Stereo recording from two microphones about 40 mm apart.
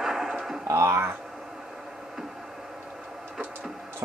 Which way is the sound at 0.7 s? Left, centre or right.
Right.